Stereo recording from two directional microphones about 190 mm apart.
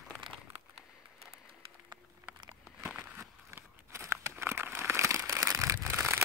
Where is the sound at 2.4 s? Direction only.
20° right (ahead or behind).